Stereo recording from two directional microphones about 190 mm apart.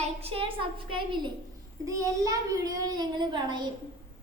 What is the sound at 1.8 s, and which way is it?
A child's voice, 15° right (ahead or behind).